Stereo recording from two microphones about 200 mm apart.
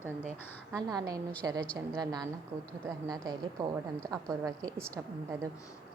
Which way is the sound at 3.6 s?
20° right (ahead or behind).